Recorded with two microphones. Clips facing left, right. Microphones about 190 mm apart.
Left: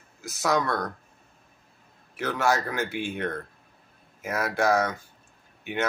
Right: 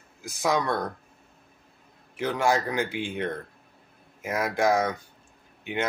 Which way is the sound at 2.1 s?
15° right (ahead or behind).